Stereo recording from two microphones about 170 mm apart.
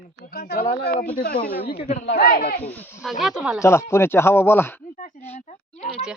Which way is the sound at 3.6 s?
15° left (ahead or behind).